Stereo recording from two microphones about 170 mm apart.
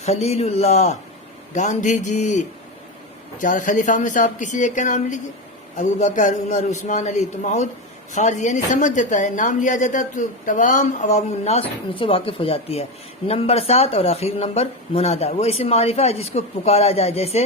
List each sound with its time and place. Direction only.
0.0 s a woman's voice: 40° left (ahead or behind)